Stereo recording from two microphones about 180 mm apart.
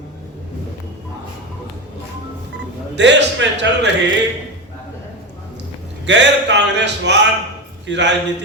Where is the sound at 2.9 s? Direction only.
75° right (ahead or behind).